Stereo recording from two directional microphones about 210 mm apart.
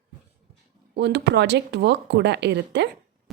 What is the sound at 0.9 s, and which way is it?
A woman's voice, 55° right (ahead or behind).